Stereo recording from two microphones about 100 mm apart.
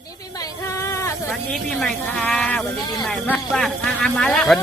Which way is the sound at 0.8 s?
30° left (ahead or behind).